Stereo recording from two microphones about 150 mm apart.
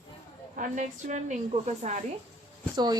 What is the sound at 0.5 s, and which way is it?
A woman's voice, 60° right (ahead or behind).